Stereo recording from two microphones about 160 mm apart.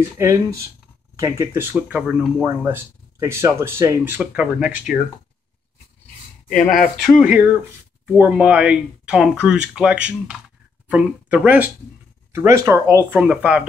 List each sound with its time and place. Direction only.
0.2 s speech: 20° right (ahead or behind)
2.4 s speech: 15° right (ahead or behind)
7.0 s speech: 5° right (ahead or behind)